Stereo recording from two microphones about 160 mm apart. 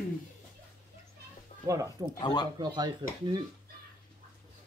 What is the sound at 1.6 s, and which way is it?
Speech, 20° right (ahead or behind).